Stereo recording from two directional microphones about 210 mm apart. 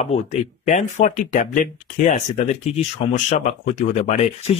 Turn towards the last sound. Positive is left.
turn(degrees=30)  # may be behind; listen again after turning